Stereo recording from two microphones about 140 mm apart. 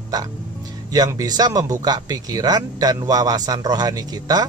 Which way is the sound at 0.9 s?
25° right (ahead or behind).